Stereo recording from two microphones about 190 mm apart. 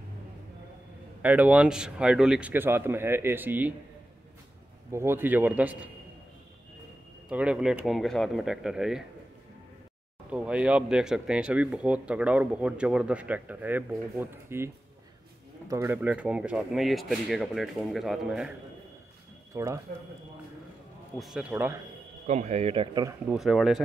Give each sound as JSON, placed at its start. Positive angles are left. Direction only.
{"t": 1.2, "sound": "speech", "side_deg": -10}
{"t": 4.9, "sound": "speech", "side_deg": -10}
{"t": 7.2, "sound": "speech", "side_deg": -5}
{"t": 10.3, "sound": "speech", "side_deg": -5}
{"t": 15.7, "sound": "speech", "side_deg": -15}
{"t": 19.5, "sound": "speech", "side_deg": -15}
{"t": 21.2, "sound": "speech", "side_deg": -5}
{"t": 22.2, "sound": "speech", "side_deg": -35}
{"t": 23.3, "sound": "speech", "side_deg": 0}